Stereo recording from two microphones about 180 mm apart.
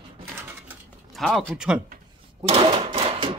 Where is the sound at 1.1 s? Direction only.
Centre (ahead or behind).